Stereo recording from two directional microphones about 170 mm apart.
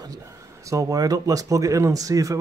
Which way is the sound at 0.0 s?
20° right (ahead or behind).